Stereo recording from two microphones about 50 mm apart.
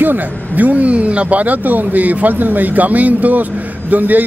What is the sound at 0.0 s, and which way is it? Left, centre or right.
Speech, right.